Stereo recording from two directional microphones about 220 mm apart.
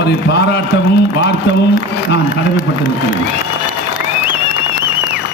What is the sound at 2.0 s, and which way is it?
Speech, 55° left (ahead or behind).